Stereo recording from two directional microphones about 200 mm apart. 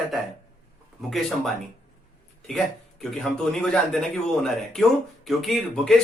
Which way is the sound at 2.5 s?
Centre (ahead or behind).